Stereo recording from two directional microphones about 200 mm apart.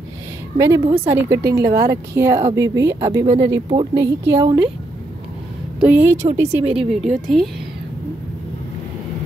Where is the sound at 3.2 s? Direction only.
30° right (ahead or behind).